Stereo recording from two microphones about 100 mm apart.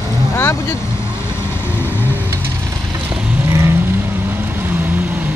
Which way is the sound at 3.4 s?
25° right (ahead or behind).